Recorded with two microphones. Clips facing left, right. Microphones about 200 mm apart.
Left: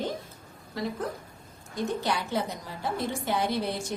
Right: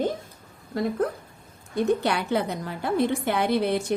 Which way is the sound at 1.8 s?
65° right (ahead or behind).